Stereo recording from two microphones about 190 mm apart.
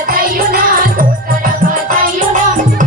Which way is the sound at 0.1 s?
50° right (ahead or behind).